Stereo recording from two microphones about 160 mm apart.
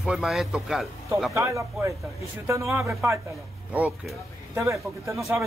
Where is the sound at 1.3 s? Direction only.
15° right (ahead or behind).